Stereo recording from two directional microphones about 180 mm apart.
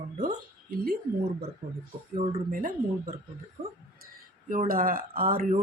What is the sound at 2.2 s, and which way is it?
Speech, 35° right (ahead or behind).